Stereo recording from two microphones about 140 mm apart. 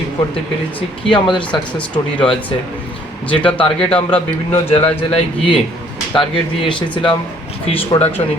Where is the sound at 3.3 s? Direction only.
40° left (ahead or behind).